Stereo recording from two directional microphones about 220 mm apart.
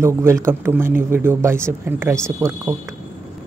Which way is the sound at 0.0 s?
10° right (ahead or behind).